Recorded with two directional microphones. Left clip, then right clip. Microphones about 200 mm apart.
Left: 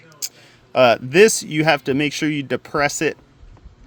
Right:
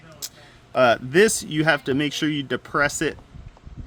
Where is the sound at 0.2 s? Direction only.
35° left (ahead or behind).